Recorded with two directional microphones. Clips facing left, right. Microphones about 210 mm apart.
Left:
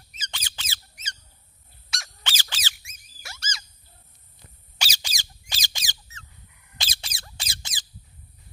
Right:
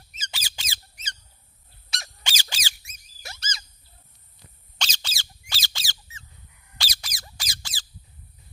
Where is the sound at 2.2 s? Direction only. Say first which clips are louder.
Even; 15° right (ahead or behind).